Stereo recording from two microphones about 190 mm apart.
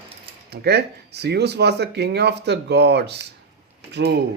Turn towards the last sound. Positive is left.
turn(degrees=-60)  # may be behind; listen again after turning